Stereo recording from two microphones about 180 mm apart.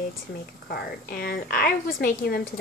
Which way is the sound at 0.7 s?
60° left (ahead or behind).